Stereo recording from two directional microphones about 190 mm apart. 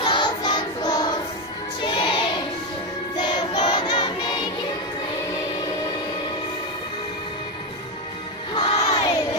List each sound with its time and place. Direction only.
0.0 s music: 25° left (ahead or behind)
1.8 s a sound: 25° left (ahead or behind)
3.2 s choir: 25° left (ahead or behind)
8.5 s crowd: 20° left (ahead or behind)